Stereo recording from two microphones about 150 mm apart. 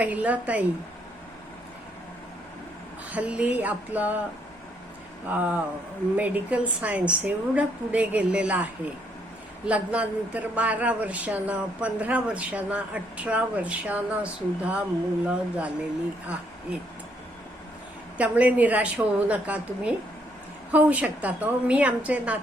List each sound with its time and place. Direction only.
0.0 s speech: 10° right (ahead or behind)
3.1 s speech: 10° right (ahead or behind)
6.1 s speech: 10° right (ahead or behind)
18.2 s speech: 10° right (ahead or behind)